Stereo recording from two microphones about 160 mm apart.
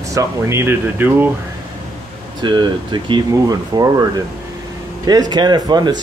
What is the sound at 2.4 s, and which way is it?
Speech, 30° right (ahead or behind).